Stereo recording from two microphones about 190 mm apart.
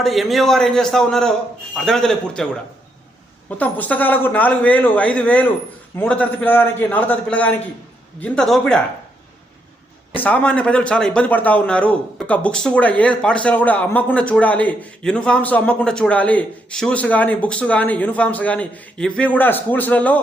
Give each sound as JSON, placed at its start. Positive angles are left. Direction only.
{"t": 0.0, "sound": "a man's voice", "side_deg": 0}
{"t": 3.6, "sound": "a man's voice", "side_deg": 10}
{"t": 10.1, "sound": "speech", "side_deg": 5}